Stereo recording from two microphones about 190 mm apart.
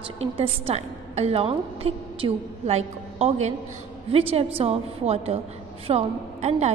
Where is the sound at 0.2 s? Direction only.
30° right (ahead or behind).